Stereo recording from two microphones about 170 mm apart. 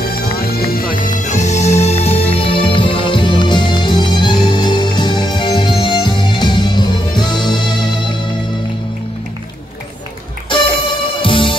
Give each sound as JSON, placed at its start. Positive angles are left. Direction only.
{"t": 0.5, "sound": "music", "side_deg": 60}
{"t": 10.9, "sound": "music", "side_deg": 30}